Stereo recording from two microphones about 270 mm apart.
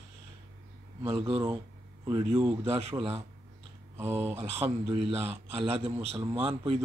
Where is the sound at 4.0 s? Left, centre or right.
Centre.